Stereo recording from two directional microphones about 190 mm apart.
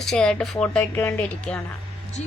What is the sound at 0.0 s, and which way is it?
Mantra, 5° left (ahead or behind).